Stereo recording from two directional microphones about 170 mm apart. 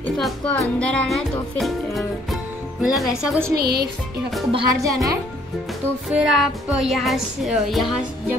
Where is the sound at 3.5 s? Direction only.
65° right (ahead or behind).